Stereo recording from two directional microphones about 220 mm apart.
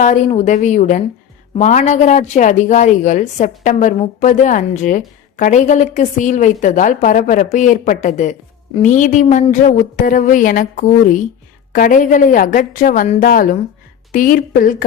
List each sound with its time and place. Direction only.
0.0 s speech: 30° left (ahead or behind)